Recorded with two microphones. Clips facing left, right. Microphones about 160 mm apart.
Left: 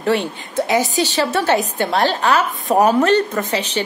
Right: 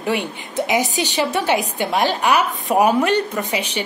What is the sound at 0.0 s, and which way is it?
A woman's voice, 15° right (ahead or behind).